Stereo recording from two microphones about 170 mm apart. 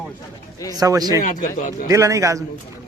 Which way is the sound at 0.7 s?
20° right (ahead or behind).